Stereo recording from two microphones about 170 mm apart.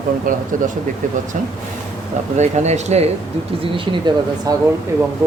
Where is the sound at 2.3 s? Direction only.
40° right (ahead or behind).